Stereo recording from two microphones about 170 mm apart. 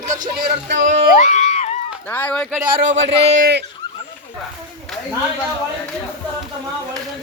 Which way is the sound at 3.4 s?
75° right (ahead or behind).